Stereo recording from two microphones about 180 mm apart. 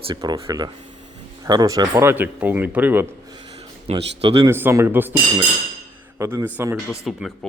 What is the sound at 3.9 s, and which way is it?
Speech, 35° right (ahead or behind).